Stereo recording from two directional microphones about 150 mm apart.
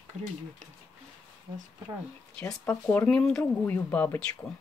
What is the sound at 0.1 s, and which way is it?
Speech, 50° right (ahead or behind).